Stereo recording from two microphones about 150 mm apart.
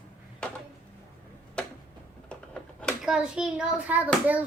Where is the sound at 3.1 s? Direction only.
5° right (ahead or behind).